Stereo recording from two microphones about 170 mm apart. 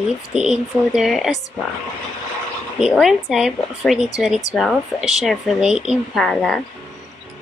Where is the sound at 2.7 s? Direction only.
Centre (ahead or behind).